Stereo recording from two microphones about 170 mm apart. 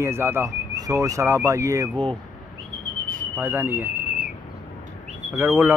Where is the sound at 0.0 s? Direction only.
15° right (ahead or behind).